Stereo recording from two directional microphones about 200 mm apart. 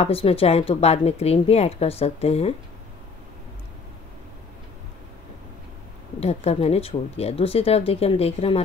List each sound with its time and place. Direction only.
0.0 s speech: 30° left (ahead or behind)
6.1 s speech: 30° left (ahead or behind)